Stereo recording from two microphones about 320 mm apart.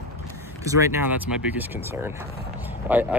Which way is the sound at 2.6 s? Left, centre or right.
Centre.